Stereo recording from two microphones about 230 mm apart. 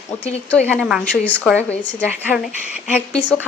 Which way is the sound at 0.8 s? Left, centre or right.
Centre.